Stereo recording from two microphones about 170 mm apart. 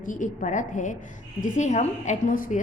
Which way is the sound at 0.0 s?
50° left (ahead or behind).